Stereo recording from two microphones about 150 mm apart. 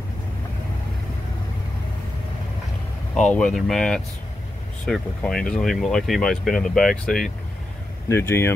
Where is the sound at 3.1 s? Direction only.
5° left (ahead or behind).